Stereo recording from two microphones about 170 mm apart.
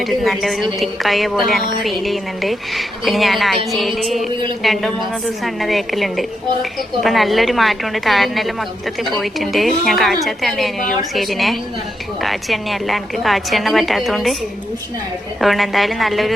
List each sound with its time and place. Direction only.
0.0 s a woman's voice: centre (ahead or behind)
15.4 s a woman's voice: centre (ahead or behind)